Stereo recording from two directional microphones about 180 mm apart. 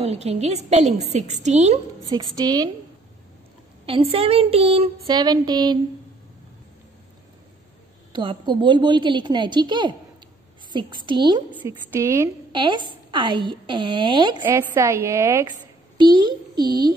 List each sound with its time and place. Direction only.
0.0 s a sound: 35° right (ahead or behind)
2.3 s a woman's voice: 20° right (ahead or behind)
3.8 s a sound: 30° right (ahead or behind)
8.1 s a woman's voice: 25° right (ahead or behind)
11.9 s a woman's voice: 15° right (ahead or behind)
12.5 s a woman's voice: 25° right (ahead or behind)
14.4 s a woman's voice: 10° right (ahead or behind)